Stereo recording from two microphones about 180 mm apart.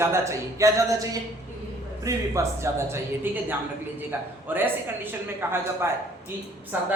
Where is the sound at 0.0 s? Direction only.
15° right (ahead or behind).